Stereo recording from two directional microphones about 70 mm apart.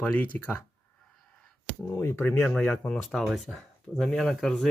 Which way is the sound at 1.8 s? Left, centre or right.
Left.